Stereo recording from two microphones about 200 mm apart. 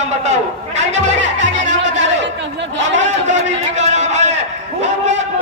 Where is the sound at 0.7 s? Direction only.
35° right (ahead or behind).